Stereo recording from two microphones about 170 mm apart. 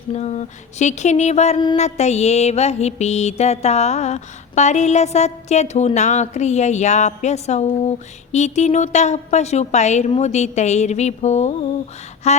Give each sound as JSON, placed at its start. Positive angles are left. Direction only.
{"t": 0.1, "sound": "mantra", "side_deg": 40}